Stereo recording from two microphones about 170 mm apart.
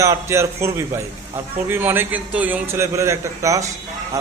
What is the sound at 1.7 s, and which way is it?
A man's voice, 10° right (ahead or behind).